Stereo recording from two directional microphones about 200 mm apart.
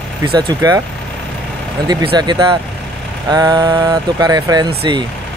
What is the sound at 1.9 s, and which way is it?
Speech, 20° right (ahead or behind).